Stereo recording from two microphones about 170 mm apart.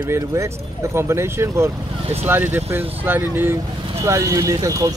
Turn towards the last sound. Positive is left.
turn(degrees=-20)  # may be behind; listen again after turning